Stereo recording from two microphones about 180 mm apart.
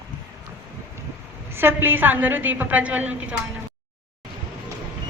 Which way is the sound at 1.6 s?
10° right (ahead or behind).